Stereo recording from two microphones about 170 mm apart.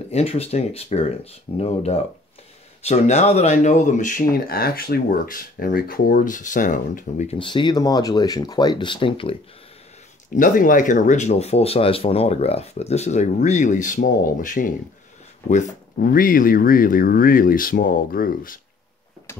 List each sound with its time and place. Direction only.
0.1 s speech: 35° left (ahead or behind)
7.3 s speech: 30° left (ahead or behind)
10.3 s speech: 50° left (ahead or behind)